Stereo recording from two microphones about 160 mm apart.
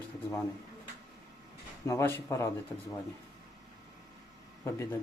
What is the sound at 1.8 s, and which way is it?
Speech, 20° left (ahead or behind).